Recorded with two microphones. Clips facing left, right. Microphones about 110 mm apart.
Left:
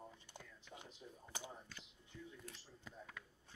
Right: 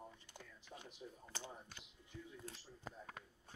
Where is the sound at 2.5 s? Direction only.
40° right (ahead or behind).